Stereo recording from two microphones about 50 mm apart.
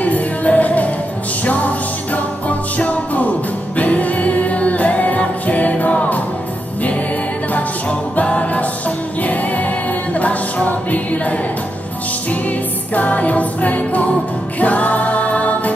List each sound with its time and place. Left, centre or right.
0.0 s music: left
7.5 s music: left